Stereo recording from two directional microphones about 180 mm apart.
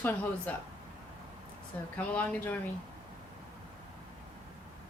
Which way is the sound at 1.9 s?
10° left (ahead or behind).